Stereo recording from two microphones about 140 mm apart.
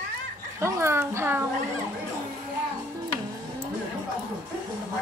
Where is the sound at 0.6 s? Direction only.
20° right (ahead or behind).